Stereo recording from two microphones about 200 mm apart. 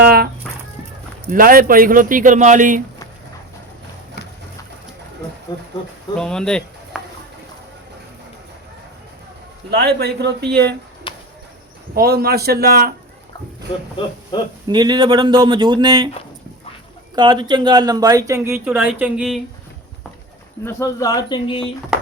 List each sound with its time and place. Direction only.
0.0 s a sound: 50° right (ahead or behind)
1.3 s speech: 45° right (ahead or behind)
5.5 s speech: 20° left (ahead or behind)
6.1 s speech: 5° left (ahead or behind)
9.6 s speech: 55° right (ahead or behind)
11.1 s bird: 25° left (ahead or behind)
11.9 s speech: 50° right (ahead or behind)
13.9 s speech: 25° left (ahead or behind)
14.7 s speech: 20° right (ahead or behind)
17.2 s speech: 20° right (ahead or behind); by 19.4 s 5° right (ahead or behind)
20.7 s speech: 15° left (ahead or behind)